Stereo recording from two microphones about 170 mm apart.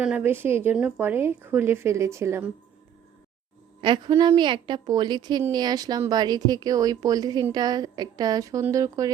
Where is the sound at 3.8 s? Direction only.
30° right (ahead or behind).